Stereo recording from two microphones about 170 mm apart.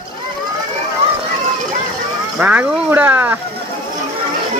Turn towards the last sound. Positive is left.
turn(degrees=-10)  # may be behind; listen again after turning